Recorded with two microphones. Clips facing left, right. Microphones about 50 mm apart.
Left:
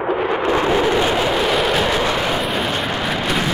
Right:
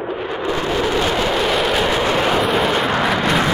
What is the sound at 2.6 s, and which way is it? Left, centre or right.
Vehicle, right.